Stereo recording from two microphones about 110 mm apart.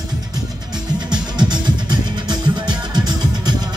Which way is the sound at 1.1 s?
40° right (ahead or behind).